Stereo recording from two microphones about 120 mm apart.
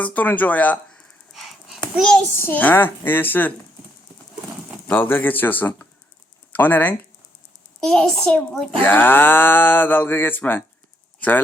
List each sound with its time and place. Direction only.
0.0 s speech: 15° left (ahead or behind)
1.3 s a sound: centre (ahead or behind)
2.0 s a child's voice: 5° left (ahead or behind)
2.4 s speech: 15° left (ahead or behind)
4.9 s speech: 15° left (ahead or behind)